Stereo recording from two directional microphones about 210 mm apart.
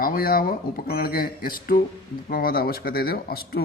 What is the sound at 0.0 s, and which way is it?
A man's voice, 45° left (ahead or behind).